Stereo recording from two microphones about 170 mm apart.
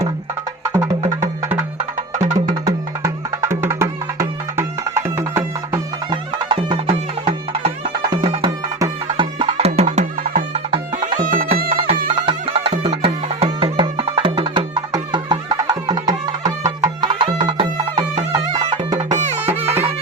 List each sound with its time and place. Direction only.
0.7 s music: 15° right (ahead or behind)
2.1 s music: 45° right (ahead or behind)
2.6 s music: 15° right (ahead or behind); by 11.4 s 55° right (ahead or behind)
11.7 s music: 35° right (ahead or behind)
19.1 s music: 40° right (ahead or behind)